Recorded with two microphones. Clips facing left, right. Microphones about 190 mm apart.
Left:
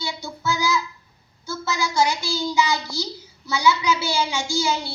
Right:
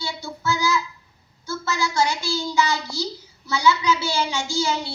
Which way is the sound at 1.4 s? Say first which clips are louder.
Even; 15° left (ahead or behind).